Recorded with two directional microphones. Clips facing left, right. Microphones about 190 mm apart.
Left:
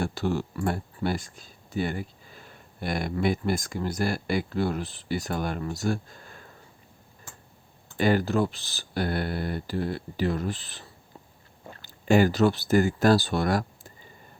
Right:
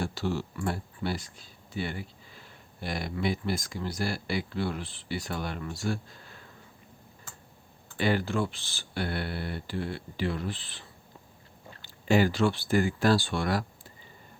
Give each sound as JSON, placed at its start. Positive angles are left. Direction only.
{"t": 0.0, "sound": "speech", "side_deg": 50}
{"t": 7.9, "sound": "speech", "side_deg": 45}